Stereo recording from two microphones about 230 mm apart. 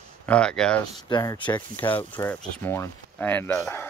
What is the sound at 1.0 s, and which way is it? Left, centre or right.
Speech, centre.